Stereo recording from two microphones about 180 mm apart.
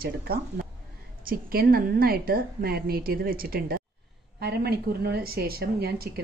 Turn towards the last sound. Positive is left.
turn(degrees=-60)  # may be behind; listen again after turning